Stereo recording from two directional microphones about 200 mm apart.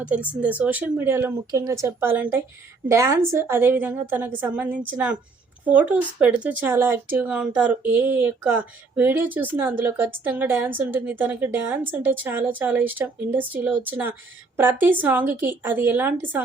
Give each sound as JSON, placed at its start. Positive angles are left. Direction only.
{"t": 0.0, "sound": "speech", "side_deg": -5}